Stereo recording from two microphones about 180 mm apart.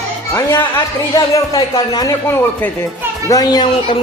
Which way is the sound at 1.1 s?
20° left (ahead or behind).